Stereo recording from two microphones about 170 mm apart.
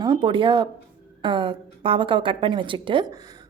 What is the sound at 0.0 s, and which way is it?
A woman's voice, 25° right (ahead or behind).